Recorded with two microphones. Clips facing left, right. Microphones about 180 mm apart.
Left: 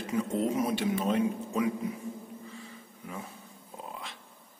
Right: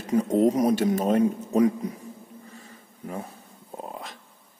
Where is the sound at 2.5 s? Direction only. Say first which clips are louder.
Left 1 dB; 45° right (ahead or behind).